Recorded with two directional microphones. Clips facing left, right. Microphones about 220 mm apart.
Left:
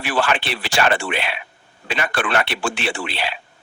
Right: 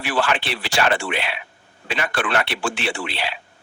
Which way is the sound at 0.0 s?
50° left (ahead or behind).